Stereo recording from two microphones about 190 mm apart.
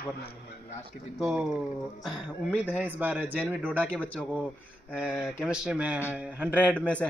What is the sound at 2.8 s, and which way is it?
Speech, 10° right (ahead or behind).